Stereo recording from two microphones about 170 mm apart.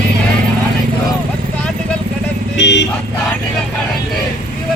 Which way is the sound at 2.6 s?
90° left.